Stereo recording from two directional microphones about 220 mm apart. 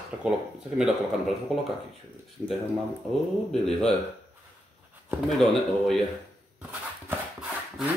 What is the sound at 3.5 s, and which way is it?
Speech, 5° left (ahead or behind).